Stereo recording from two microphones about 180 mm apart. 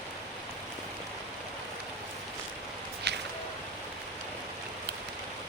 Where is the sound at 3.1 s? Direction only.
70° right (ahead or behind).